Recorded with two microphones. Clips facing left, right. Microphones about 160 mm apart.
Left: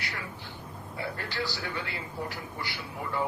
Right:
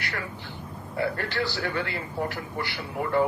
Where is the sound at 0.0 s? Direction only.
70° right (ahead or behind).